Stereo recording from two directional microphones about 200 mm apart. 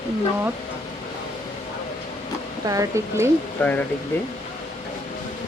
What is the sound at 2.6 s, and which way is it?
Speech, 15° right (ahead or behind).